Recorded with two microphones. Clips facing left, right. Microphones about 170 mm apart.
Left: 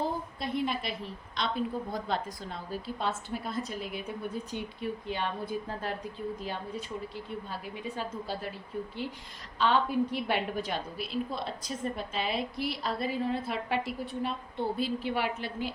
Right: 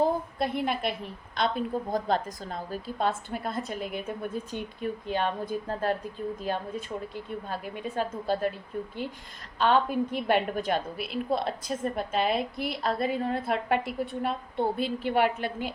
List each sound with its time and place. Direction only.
0.3 s a woman's voice: 55° right (ahead or behind)
9.6 s a woman's voice: 50° right (ahead or behind)